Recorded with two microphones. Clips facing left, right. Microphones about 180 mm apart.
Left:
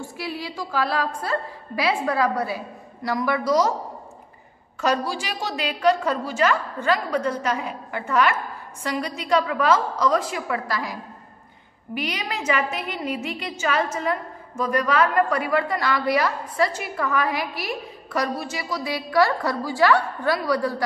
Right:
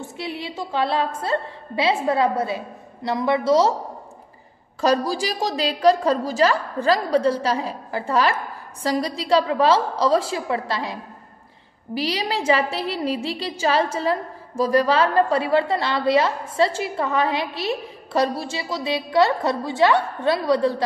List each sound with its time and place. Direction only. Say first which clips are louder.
0.0 s a woman's voice: right 1 dB; 25° right (ahead or behind)
4.7 s a woman's voice: right 4 dB; 35° right (ahead or behind)